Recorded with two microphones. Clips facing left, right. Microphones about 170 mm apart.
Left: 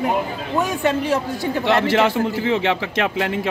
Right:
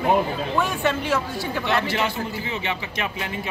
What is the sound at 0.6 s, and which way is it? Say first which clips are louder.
Speech: left 5 dB; 40° left (ahead or behind).